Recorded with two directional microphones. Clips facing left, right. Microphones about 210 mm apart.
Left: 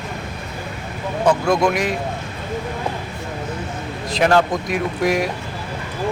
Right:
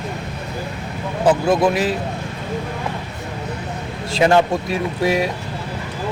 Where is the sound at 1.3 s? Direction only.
5° right (ahead or behind).